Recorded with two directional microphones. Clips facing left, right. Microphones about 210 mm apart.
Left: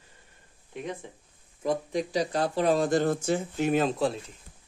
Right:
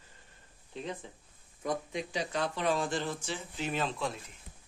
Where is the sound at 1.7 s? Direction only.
35° left (ahead or behind).